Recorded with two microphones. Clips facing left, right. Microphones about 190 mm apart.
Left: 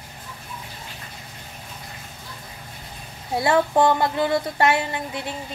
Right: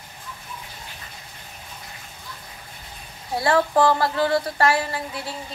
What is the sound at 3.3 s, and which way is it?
Speech, 25° left (ahead or behind).